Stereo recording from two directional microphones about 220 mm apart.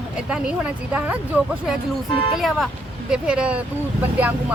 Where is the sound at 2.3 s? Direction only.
Centre (ahead or behind).